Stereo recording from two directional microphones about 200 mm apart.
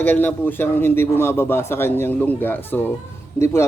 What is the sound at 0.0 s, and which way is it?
A man's voice, 10° left (ahead or behind).